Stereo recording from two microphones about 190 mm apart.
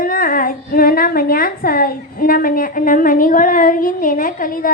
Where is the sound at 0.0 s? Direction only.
50° left (ahead or behind).